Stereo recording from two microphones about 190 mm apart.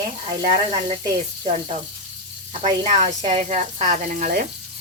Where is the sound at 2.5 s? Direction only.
35° right (ahead or behind).